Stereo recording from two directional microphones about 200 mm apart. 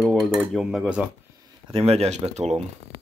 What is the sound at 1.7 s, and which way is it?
Speech, 30° right (ahead or behind).